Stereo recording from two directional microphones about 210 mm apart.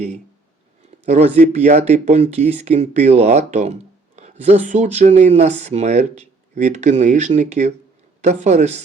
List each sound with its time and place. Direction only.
1.0 s speech: 30° right (ahead or behind)